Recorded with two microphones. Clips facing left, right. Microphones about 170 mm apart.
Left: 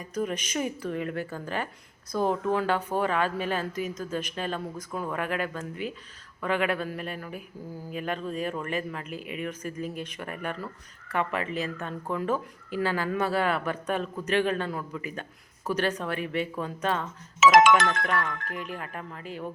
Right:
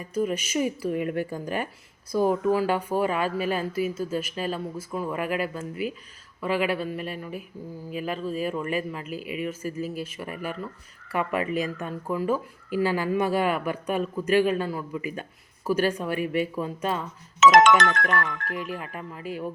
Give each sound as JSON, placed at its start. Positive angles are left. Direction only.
{"t": 0.0, "sound": "speech", "side_deg": -5}
{"t": 18.4, "sound": "speech", "side_deg": -5}